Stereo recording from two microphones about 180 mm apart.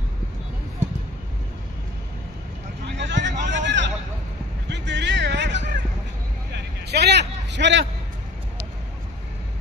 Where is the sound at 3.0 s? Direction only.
80° right.